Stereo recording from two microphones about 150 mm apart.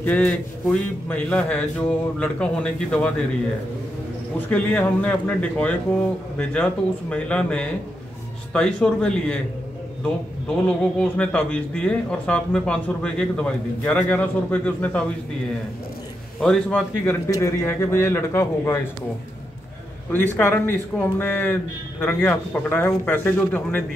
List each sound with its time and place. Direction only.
0.0 s speech: 10° left (ahead or behind)
4.5 s speech: 10° left (ahead or behind)
11.0 s speech: 5° left (ahead or behind)
16.3 s speech: 5° left (ahead or behind)
20.1 s speech: 15° left (ahead or behind)